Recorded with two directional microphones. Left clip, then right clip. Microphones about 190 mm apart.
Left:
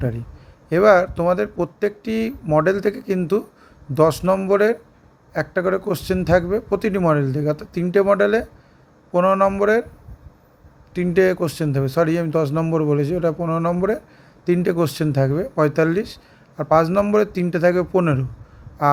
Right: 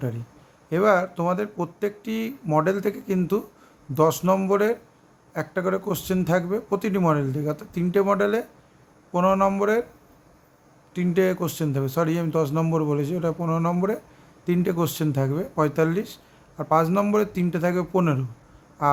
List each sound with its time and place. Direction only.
0.7 s speech: 15° left (ahead or behind)
10.9 s speech: 15° left (ahead or behind)
18.8 s a sound: 15° left (ahead or behind)